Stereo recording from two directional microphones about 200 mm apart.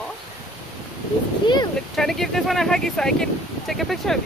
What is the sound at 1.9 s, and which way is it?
Speech, centre (ahead or behind).